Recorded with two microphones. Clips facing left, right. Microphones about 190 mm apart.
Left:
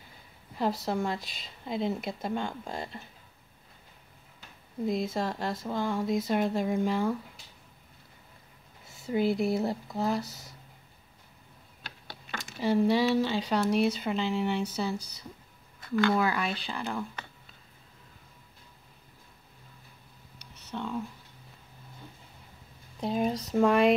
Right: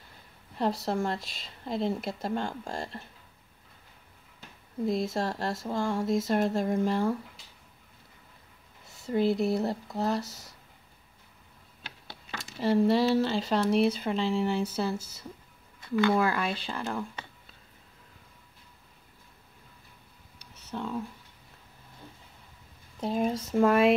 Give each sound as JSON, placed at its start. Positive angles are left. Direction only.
{"t": 0.6, "sound": "speech", "side_deg": 0}
{"t": 4.8, "sound": "speech", "side_deg": 0}
{"t": 8.8, "sound": "speech", "side_deg": 0}
{"t": 12.5, "sound": "speech", "side_deg": 0}
{"t": 16.3, "sound": "speech", "side_deg": 0}
{"t": 20.7, "sound": "speech", "side_deg": -5}
{"t": 22.9, "sound": "speech", "side_deg": 0}